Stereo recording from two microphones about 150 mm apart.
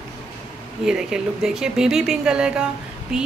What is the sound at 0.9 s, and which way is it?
Speech, 5° right (ahead or behind).